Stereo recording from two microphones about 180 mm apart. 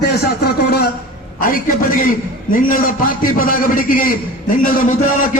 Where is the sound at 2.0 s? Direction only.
50° left (ahead or behind).